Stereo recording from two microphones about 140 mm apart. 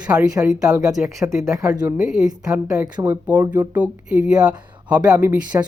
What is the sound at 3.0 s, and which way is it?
Speech, 15° right (ahead or behind).